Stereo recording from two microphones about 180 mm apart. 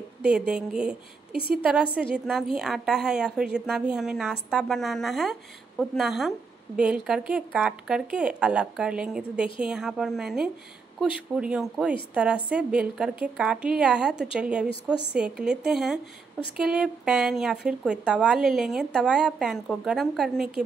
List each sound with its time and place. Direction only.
0.2 s a woman's voice: 5° right (ahead or behind)